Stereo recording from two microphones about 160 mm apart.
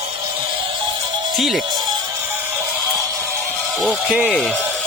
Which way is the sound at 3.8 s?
Centre (ahead or behind).